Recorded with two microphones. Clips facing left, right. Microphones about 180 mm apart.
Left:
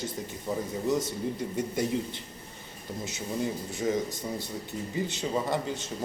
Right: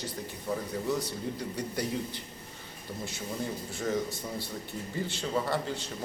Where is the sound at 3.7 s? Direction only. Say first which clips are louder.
Left 1 dB; 15° left (ahead or behind).